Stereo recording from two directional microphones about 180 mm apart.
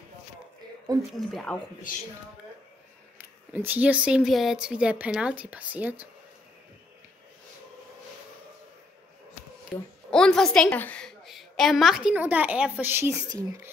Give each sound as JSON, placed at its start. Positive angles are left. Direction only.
{"t": 1.1, "sound": "speech", "side_deg": 5}
{"t": 1.9, "sound": "speech", "side_deg": 50}
{"t": 3.2, "sound": "speech", "side_deg": -10}
{"t": 9.7, "sound": "a woman's voice", "side_deg": 0}